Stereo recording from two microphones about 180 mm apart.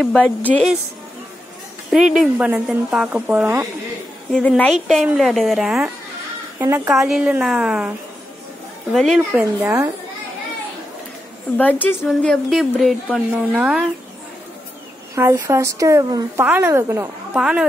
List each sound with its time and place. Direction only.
0.0 s a woman's voice: 5° left (ahead or behind)
1.9 s speech: centre (ahead or behind)
4.3 s a woman's voice: 5° left (ahead or behind)
6.6 s speech: 15° right (ahead or behind)
6.9 s a woman's voice: centre (ahead or behind)
8.9 s a woman's voice: centre (ahead or behind)
9.3 s speech: 15° right (ahead or behind)
11.5 s a woman's voice: 10° left (ahead or behind)
15.1 s speech: 15° right (ahead or behind)
16.4 s speech: 10° right (ahead or behind)
17.4 s a woman's voice: 5° right (ahead or behind)